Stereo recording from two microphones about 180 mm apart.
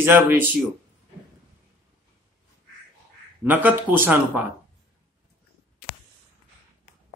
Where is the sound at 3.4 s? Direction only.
10° right (ahead or behind).